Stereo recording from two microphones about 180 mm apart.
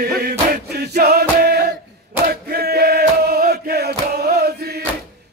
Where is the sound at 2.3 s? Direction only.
60° right (ahead or behind).